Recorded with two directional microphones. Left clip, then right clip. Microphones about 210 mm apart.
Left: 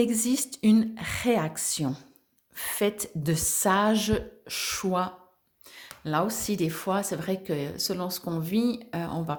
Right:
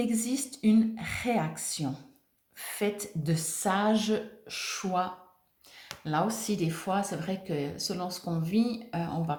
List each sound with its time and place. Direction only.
0.0 s speech: 50° left (ahead or behind)